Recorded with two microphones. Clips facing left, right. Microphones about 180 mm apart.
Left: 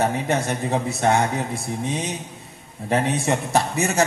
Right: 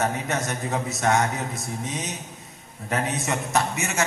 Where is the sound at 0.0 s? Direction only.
30° left (ahead or behind).